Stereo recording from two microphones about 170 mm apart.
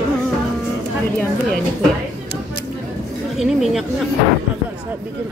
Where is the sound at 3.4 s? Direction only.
Centre (ahead or behind).